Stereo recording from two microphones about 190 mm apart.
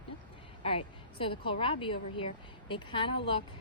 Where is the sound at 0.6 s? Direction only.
30° left (ahead or behind).